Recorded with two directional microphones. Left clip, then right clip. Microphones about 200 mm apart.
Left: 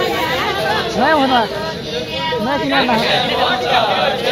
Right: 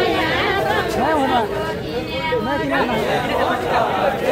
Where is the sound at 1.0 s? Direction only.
40° left (ahead or behind).